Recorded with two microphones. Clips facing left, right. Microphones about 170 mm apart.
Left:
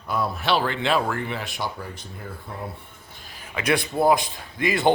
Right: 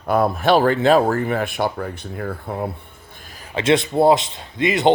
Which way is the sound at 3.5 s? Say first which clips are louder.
Right 6 dB; 25° right (ahead or behind).